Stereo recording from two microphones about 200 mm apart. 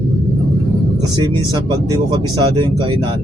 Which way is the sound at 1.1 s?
20° right (ahead or behind).